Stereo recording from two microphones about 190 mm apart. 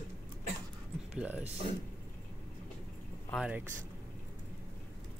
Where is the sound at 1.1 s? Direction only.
5° right (ahead or behind).